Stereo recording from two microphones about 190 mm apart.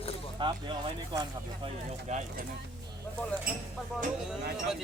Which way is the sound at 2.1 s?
40° right (ahead or behind).